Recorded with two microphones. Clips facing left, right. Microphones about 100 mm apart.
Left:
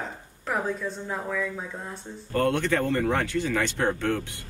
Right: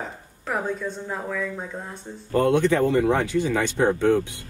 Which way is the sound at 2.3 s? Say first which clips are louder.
Right 5 dB; 15° right (ahead or behind).